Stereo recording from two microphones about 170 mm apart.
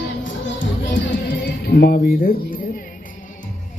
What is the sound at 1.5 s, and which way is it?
Music, 75° left (ahead or behind).